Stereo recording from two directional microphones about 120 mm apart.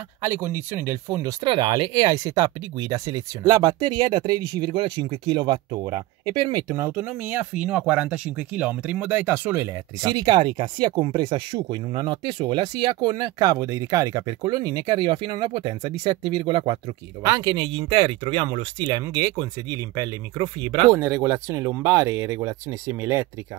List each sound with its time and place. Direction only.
0.2 s speech: 20° right (ahead or behind)
1.4 s speech: 45° right (ahead or behind)
7.1 s speech: 15° right (ahead or behind)
10.0 s speech: 35° right (ahead or behind)
17.2 s speech: 35° right (ahead or behind)
20.6 s speech: 50° right (ahead or behind)
20.9 s speech: 25° right (ahead or behind)